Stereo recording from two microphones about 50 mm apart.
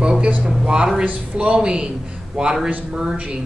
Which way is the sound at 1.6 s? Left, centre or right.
Centre.